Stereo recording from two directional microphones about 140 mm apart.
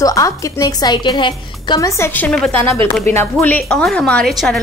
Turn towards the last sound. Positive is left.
turn(degrees=5)  # may be behind; listen again after turning